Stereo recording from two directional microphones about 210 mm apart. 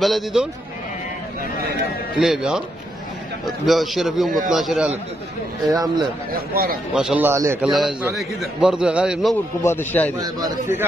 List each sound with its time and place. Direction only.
0.0 s a man's voice: centre (ahead or behind)
2.1 s a man's voice: 5° right (ahead or behind)
5.7 s a man's voice: 20° right (ahead or behind)
6.3 s a man's voice: 45° right (ahead or behind)
6.9 s a man's voice: 5° right (ahead or behind)
7.7 s a man's voice: centre (ahead or behind)
9.6 s speech: 10° left (ahead or behind)
10.1 s a man's voice: 15° right (ahead or behind)